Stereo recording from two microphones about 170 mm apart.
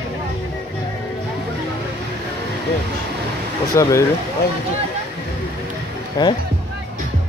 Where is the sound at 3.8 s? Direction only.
20° left (ahead or behind).